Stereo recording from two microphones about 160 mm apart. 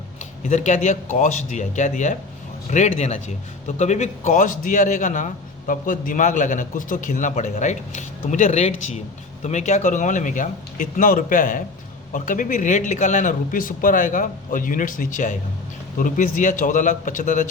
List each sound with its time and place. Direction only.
0.2 s a man's voice: 45° left (ahead or behind)